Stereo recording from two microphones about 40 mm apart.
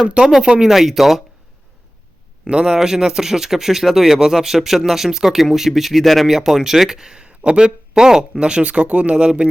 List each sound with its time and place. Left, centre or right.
0.4 s speech: centre
0.7 s speech: centre
2.4 s a man's voice: right
2.7 s speech: centre